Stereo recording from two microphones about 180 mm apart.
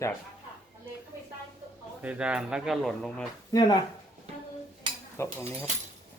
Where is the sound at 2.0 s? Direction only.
5° right (ahead or behind).